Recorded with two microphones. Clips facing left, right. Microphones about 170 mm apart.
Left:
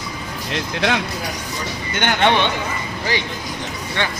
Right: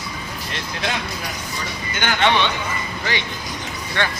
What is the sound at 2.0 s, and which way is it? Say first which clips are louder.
Speech: left 2 dB; 55° left (ahead or behind).